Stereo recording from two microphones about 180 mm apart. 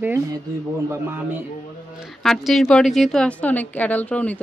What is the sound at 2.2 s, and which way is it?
A woman's voice, centre (ahead or behind).